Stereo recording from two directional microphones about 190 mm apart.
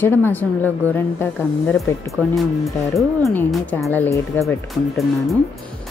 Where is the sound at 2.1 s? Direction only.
Centre (ahead or behind).